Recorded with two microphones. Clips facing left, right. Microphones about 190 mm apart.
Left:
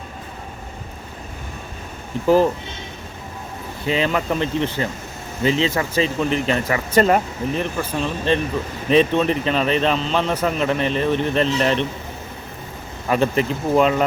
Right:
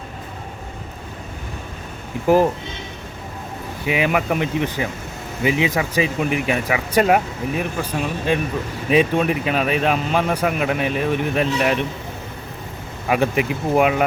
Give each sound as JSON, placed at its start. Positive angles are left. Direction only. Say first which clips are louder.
{"t": 2.2, "sound": "speech", "louder": "even", "side_deg": -15}
{"t": 3.8, "sound": "speech", "louder": "right 1 dB", "side_deg": -15}
{"t": 13.1, "sound": "speech", "louder": "even", "side_deg": -10}